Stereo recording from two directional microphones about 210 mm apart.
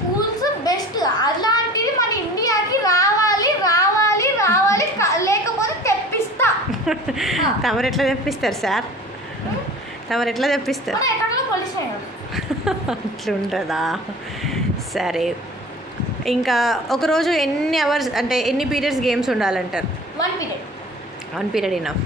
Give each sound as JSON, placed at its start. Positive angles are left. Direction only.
{"t": 0.4, "sound": "a sound", "side_deg": 20}
{"t": 6.9, "sound": "a woman's voice", "side_deg": 0}
{"t": 10.0, "sound": "a woman's voice", "side_deg": 0}
{"t": 12.4, "sound": "a woman's voice", "side_deg": 0}
{"t": 14.4, "sound": "a sound", "side_deg": 0}
{"t": 16.3, "sound": "a woman's voice", "side_deg": 0}
{"t": 21.4, "sound": "a woman's voice", "side_deg": 0}